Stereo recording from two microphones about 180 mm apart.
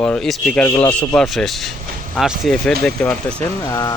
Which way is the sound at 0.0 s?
5° left (ahead or behind).